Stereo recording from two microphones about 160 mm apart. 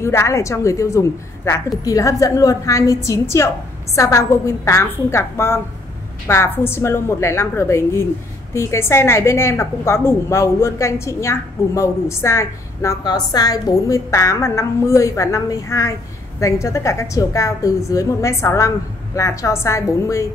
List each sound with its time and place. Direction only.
0.0 s a woman's voice: 15° left (ahead or behind)